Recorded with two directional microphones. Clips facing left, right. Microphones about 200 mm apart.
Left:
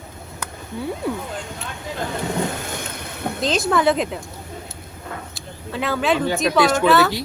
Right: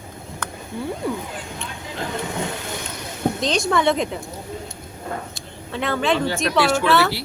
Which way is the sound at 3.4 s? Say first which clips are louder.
Left 3 dB; 5° left (ahead or behind).